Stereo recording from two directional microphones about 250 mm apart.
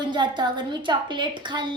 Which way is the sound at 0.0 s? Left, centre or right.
Centre.